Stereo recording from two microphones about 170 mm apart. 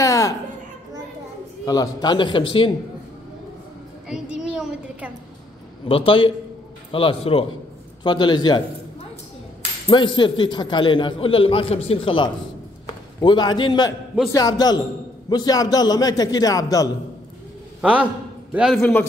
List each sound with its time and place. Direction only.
0.0 s a sound: 20° left (ahead or behind)
1.7 s a man's voice: 20° left (ahead or behind)
4.1 s a sound: 5° right (ahead or behind)
5.9 s a man's voice: 30° left (ahead or behind)
9.8 s a man's voice: 25° left (ahead or behind)
18.5 s a man's voice: 5° right (ahead or behind)
18.8 s speech: 10° left (ahead or behind)